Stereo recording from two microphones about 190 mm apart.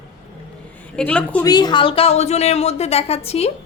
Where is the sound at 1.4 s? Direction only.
20° left (ahead or behind).